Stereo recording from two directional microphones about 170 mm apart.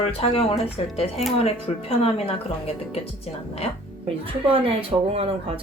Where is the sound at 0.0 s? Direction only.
35° left (ahead or behind).